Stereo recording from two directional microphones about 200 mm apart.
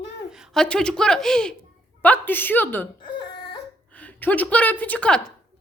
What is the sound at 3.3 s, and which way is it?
Crying, 55° left (ahead or behind).